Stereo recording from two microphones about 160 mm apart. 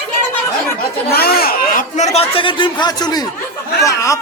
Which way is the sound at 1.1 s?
75° left (ahead or behind).